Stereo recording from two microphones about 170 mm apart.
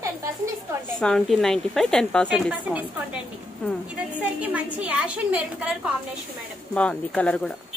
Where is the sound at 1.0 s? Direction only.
5° left (ahead or behind).